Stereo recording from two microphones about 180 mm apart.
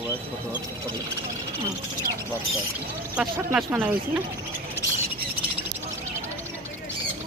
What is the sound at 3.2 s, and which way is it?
Speech, 15° right (ahead or behind).